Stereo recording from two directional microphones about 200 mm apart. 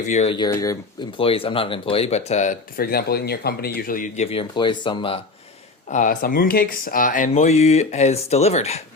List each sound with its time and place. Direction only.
0.1 s speech: 35° left (ahead or behind)
0.3 s speech: 20° left (ahead or behind)
1.2 s speech: 25° left (ahead or behind)
4.3 s speech: 25° left (ahead or behind)
5.9 s speech: 40° left (ahead or behind)